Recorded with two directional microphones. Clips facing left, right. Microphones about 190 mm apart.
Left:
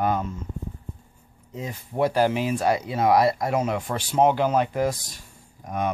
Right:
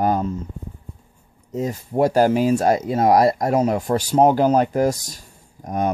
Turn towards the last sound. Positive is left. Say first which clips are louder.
# right 4 dB
turn(degrees=-40)  # may be behind; listen again after turning